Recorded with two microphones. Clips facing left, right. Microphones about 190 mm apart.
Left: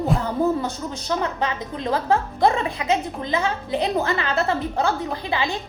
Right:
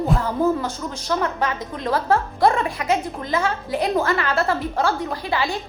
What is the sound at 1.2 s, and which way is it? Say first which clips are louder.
A woman's voice: right 1 dB; 20° left (ahead or behind).